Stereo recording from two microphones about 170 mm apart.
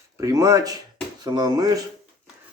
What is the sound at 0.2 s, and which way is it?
Speech, 20° right (ahead or behind).